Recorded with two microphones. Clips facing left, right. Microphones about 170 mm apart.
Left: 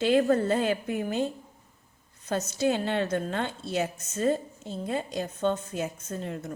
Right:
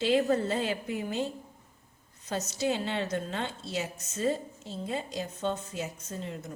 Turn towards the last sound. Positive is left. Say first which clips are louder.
# left 4 dB
turn(degrees=55)  # may be behind; listen again after turning